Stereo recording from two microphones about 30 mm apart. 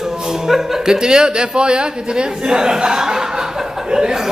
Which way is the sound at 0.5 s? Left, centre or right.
Centre.